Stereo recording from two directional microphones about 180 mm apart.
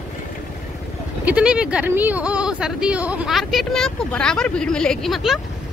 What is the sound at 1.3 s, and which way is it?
Speech, 5° right (ahead or behind).